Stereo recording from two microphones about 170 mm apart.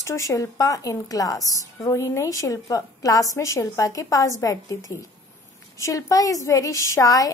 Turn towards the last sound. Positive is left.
turn(degrees=20)  # may be behind; listen again after turning